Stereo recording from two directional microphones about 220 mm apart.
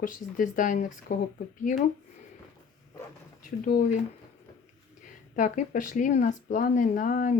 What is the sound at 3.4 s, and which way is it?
Speech, 35° left (ahead or behind).